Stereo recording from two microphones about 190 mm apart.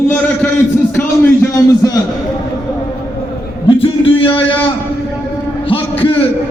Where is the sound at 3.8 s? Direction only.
30° left (ahead or behind).